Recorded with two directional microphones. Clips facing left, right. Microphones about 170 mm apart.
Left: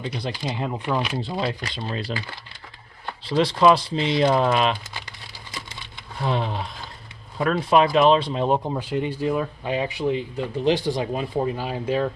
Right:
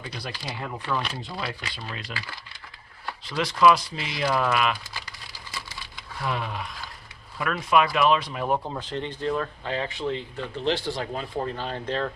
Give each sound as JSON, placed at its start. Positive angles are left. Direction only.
{"t": 0.0, "sound": "speech", "side_deg": 25}
{"t": 1.2, "sound": "speech", "side_deg": 30}
{"t": 6.1, "sound": "speech", "side_deg": 30}